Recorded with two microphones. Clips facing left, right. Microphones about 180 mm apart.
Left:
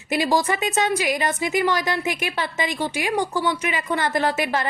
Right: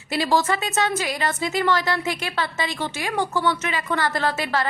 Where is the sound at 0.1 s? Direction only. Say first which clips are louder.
Left 1 dB; 15° left (ahead or behind).